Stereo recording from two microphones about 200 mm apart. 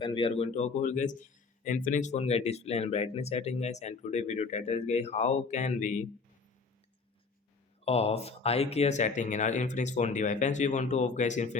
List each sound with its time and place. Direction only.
0.0 s a man's voice: 25° left (ahead or behind)
7.9 s a man's voice: 30° left (ahead or behind)